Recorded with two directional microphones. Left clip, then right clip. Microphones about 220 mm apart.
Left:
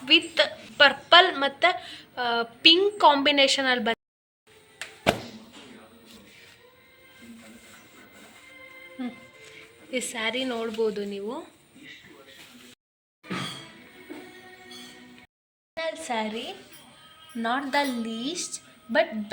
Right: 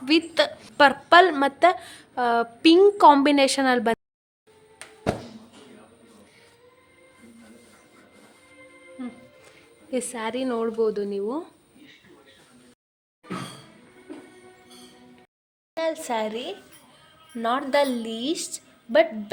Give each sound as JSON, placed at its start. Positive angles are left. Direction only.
{"t": 0.0, "sound": "a woman's voice", "side_deg": -50}
{"t": 9.0, "sound": "music", "side_deg": 15}
{"t": 9.4, "sound": "a woman's voice", "side_deg": -50}
{"t": 15.7, "sound": "a woman's voice", "side_deg": -55}